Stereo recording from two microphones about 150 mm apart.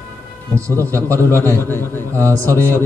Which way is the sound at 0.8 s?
20° right (ahead or behind).